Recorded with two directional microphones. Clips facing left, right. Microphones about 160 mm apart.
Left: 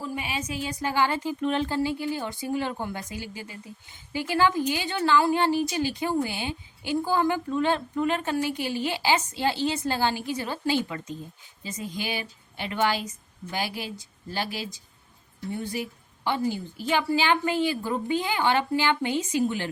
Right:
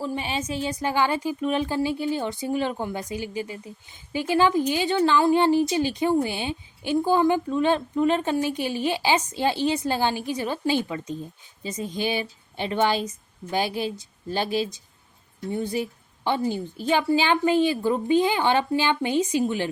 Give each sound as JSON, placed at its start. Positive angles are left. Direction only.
{"t": 0.0, "sound": "a woman's voice", "side_deg": -30}